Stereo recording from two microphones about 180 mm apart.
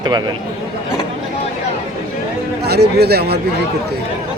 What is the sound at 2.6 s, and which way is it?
Speech, 65° right (ahead or behind).